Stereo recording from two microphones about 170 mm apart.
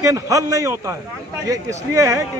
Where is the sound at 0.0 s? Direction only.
20° right (ahead or behind).